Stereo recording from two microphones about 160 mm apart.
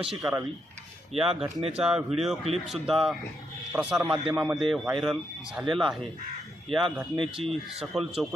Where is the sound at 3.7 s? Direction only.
10° right (ahead or behind).